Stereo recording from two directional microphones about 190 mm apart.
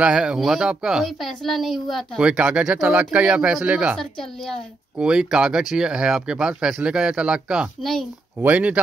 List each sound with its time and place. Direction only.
0.0 s a woman's voice: 5° right (ahead or behind)